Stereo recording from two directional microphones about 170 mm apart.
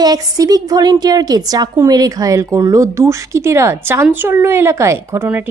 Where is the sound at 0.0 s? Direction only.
20° right (ahead or behind).